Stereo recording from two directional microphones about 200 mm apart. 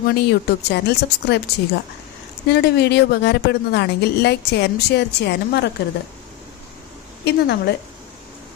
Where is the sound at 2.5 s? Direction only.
60° left (ahead or behind).